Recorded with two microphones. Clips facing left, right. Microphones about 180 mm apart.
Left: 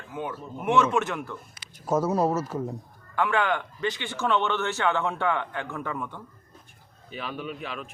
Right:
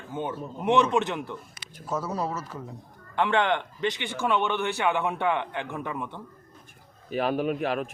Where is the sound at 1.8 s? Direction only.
45° left (ahead or behind).